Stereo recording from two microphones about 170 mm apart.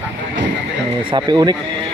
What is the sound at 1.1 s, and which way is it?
Speech, 25° right (ahead or behind).